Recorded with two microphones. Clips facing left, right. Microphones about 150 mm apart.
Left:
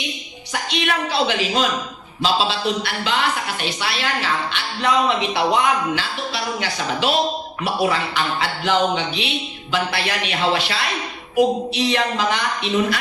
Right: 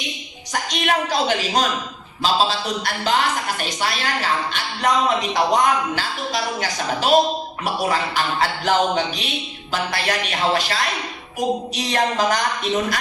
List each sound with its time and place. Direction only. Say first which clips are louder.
0.5 s a woman's voice: right 1 dB; 45° right (ahead or behind)